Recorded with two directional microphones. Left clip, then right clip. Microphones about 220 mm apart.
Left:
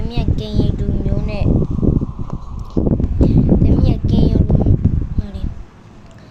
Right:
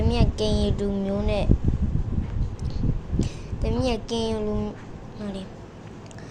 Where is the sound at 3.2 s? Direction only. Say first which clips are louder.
Left 17 dB; 5° right (ahead or behind).